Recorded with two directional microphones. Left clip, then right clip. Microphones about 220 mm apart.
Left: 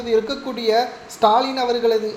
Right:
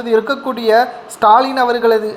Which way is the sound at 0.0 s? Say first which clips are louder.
Right 5 dB; 15° right (ahead or behind).